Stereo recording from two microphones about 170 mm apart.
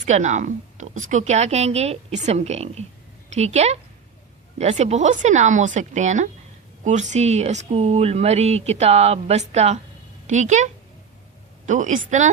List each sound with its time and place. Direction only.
0.0 s a woman's voice: 45° right (ahead or behind)